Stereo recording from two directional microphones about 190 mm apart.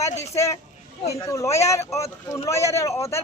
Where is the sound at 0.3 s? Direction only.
15° left (ahead or behind).